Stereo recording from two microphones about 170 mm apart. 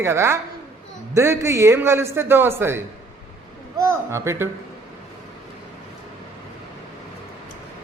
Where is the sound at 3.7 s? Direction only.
15° right (ahead or behind).